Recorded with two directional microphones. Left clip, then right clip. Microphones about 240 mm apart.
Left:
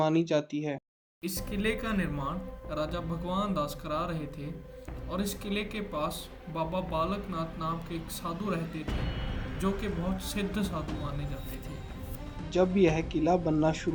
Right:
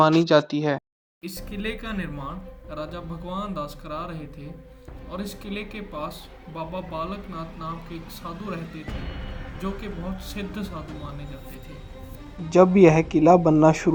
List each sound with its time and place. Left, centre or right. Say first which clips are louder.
0.0 s speech: right 10 dB; centre
1.2 s speech: even; centre
12.5 s speech: right 10 dB; right